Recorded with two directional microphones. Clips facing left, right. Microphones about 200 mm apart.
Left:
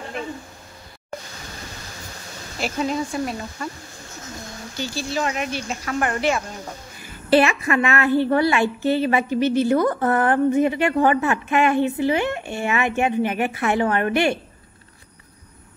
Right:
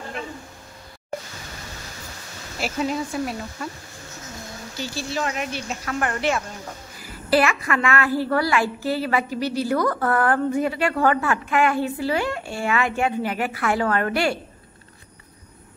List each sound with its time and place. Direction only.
2.6 s speech: 5° right (ahead or behind)
4.8 s speech: 5° right (ahead or behind)
7.0 s a woman's voice: 25° left (ahead or behind)